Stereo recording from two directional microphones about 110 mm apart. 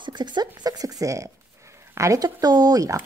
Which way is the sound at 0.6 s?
35° right (ahead or behind).